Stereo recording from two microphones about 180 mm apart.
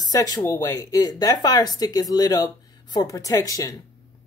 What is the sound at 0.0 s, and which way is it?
Speech, 20° left (ahead or behind).